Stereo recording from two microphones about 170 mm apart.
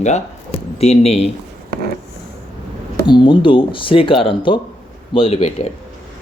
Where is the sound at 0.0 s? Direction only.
40° left (ahead or behind).